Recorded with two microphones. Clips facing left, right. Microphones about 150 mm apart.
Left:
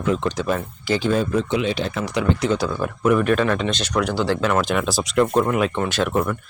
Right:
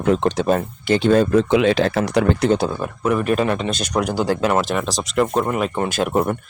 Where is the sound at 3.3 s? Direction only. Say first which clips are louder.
Even; 35° right (ahead or behind).